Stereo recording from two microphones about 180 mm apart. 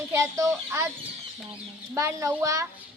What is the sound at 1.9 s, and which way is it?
Speech, 15° right (ahead or behind).